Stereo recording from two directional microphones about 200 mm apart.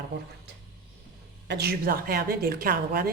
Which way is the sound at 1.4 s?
55° right (ahead or behind).